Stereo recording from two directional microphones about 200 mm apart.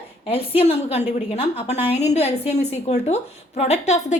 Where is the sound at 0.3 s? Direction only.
30° left (ahead or behind).